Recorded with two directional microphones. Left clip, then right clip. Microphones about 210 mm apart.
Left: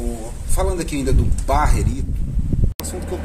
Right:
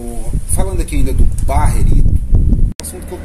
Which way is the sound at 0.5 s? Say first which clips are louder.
Even; 20° right (ahead or behind).